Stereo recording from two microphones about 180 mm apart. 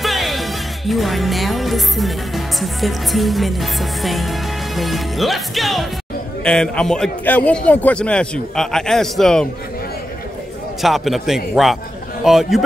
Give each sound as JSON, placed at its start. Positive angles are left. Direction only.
{"t": 0.0, "sound": "music", "side_deg": 0}
{"t": 10.8, "sound": "music", "side_deg": 0}